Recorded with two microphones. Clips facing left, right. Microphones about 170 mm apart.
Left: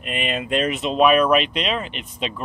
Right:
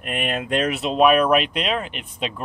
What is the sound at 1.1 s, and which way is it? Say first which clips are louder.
Speech: left 1 dB; 50° right (ahead or behind).